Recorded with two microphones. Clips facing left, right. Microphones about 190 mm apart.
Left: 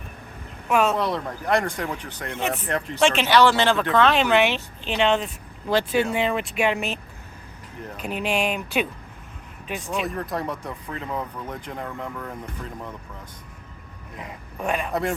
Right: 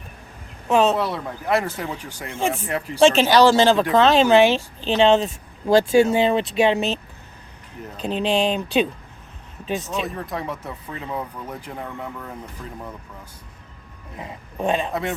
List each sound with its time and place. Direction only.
0.7 s speech: 25° right (ahead or behind)
0.9 s speech: 5° right (ahead or behind)
3.2 s speech: 40° right (ahead or behind)
3.9 s speech: 30° right (ahead or behind)
10.0 s speech: centre (ahead or behind)
14.2 s speech: 25° right (ahead or behind)